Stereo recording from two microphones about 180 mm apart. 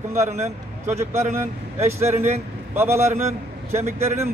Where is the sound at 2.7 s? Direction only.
15° right (ahead or behind).